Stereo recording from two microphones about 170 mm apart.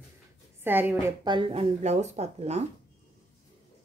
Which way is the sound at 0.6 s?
10° right (ahead or behind).